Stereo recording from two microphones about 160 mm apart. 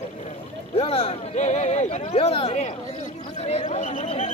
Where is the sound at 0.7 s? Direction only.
35° left (ahead or behind).